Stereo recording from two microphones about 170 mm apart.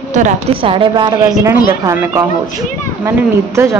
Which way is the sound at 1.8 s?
15° right (ahead or behind).